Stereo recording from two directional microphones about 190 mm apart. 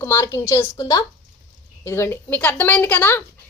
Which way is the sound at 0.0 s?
15° left (ahead or behind).